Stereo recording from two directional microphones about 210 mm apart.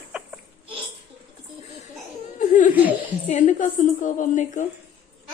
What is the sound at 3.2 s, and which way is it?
A woman's voice, 35° left (ahead or behind).